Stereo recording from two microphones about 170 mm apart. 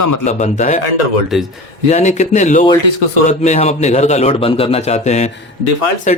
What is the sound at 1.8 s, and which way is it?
A man's voice, 45° left (ahead or behind).